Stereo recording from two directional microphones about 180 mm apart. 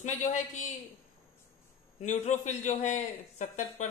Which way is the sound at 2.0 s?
40° left (ahead or behind).